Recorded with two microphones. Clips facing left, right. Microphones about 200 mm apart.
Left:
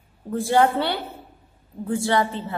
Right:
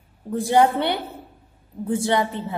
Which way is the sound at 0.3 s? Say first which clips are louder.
Right 1 dB; 15° right (ahead or behind).